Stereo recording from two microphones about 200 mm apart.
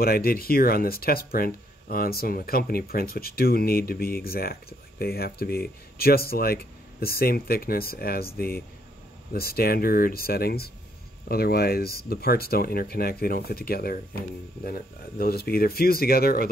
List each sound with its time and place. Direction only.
0.0 s speech: 50° left (ahead or behind)